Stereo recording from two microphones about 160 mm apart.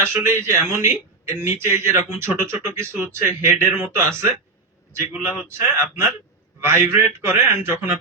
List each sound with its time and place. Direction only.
0.0 s a man's voice: 15° right (ahead or behind)